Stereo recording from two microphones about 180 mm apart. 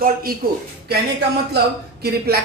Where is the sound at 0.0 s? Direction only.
55° right (ahead or behind).